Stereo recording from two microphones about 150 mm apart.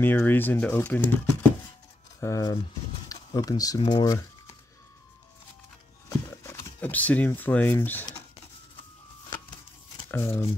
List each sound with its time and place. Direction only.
0.0 s speech: 15° left (ahead or behind)
6.0 s a sound: 20° left (ahead or behind)
10.1 s speech: 15° left (ahead or behind)